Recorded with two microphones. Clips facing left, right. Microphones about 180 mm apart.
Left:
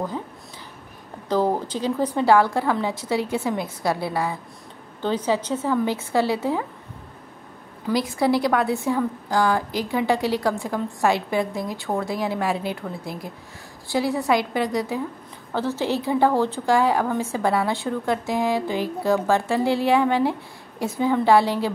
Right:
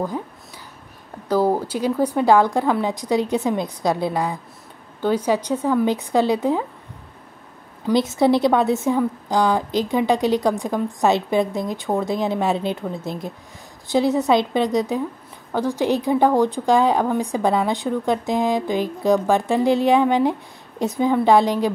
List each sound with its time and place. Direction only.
1.3 s a woman's voice: 10° right (ahead or behind)
7.9 s a woman's voice: 20° right (ahead or behind)